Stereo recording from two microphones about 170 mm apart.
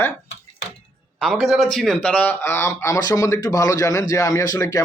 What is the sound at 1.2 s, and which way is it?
Speech, centre (ahead or behind).